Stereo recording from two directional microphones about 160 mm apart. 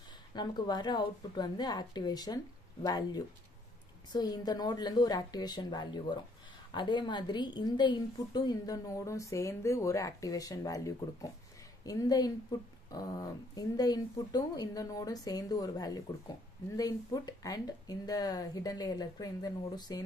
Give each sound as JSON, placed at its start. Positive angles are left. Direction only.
{"t": 0.3, "sound": "a woman's voice", "side_deg": 25}